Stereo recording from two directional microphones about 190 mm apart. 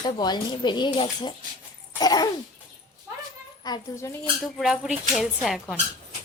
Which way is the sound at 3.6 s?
20° left (ahead or behind).